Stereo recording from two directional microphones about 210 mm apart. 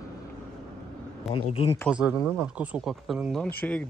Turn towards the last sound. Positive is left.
turn(degrees=5)  # may be behind; listen again after turning